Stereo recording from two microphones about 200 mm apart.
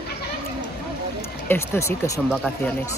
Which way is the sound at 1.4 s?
10° left (ahead or behind).